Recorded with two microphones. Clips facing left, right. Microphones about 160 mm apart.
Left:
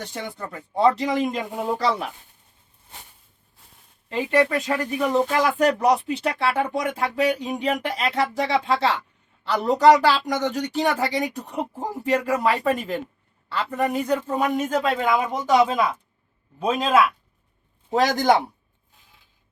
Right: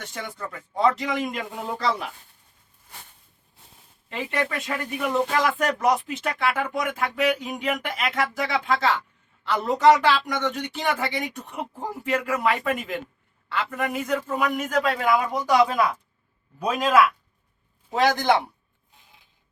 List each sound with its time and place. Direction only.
0.0 s speech: 30° left (ahead or behind)
4.1 s a man's voice: 35° left (ahead or behind)
17.9 s speech: 40° left (ahead or behind)